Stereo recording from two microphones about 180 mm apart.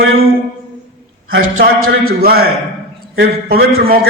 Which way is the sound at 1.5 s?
55° right (ahead or behind).